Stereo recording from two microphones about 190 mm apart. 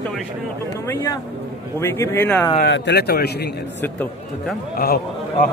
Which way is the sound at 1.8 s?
15° left (ahead or behind).